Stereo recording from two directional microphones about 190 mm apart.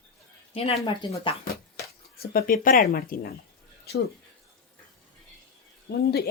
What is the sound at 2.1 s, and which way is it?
Speech, 55° left (ahead or behind).